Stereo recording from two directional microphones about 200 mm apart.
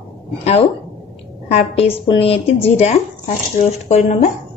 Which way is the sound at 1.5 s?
30° left (ahead or behind).